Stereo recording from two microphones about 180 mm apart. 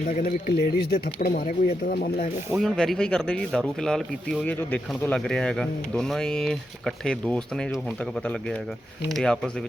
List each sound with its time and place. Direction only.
0.1 s speech: 50° left (ahead or behind)
2.6 s speech: centre (ahead or behind)